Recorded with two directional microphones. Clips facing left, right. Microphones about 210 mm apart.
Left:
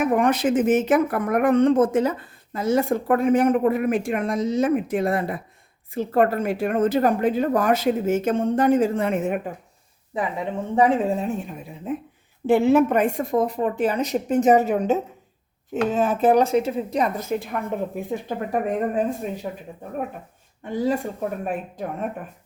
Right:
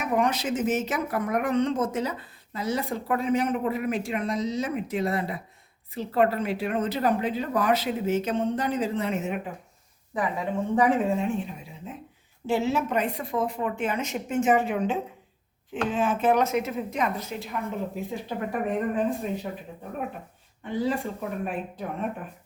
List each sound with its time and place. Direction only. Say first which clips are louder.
0.0 s speech: left 6 dB; 55° left (ahead or behind)
10.8 s a woman's voice: left 4 dB; 25° left (ahead or behind)
11.2 s a woman's voice: left 1 dB; 40° left (ahead or behind)
11.9 s a woman's voice: left 14 dB; 55° left (ahead or behind); by 17.1 s 30° left (ahead or behind)
17.2 s speech: left 6 dB; 50° left (ahead or behind)
20.7 s speech: left 4 dB; 45° left (ahead or behind)